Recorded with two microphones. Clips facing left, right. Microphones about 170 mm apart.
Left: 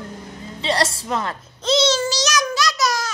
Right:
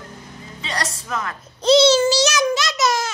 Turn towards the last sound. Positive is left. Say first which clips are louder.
# right 1 dB
turn(degrees=-25)  # may be behind; listen again after turning